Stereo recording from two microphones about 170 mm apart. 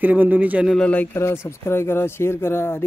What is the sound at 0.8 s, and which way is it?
Speech, 10° left (ahead or behind).